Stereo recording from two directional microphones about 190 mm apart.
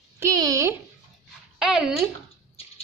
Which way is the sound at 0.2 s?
20° right (ahead or behind).